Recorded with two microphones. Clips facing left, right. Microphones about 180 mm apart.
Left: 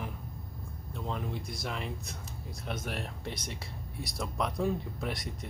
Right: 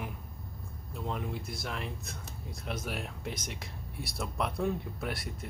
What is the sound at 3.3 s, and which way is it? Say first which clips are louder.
Speech: even; 30° left (ahead or behind).